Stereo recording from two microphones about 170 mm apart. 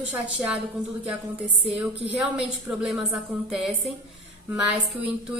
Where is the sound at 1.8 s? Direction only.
10° right (ahead or behind).